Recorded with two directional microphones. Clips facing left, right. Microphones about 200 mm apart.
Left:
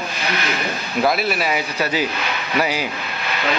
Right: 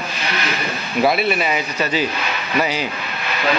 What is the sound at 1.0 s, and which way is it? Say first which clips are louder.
A man's voice: right 2 dB; centre (ahead or behind).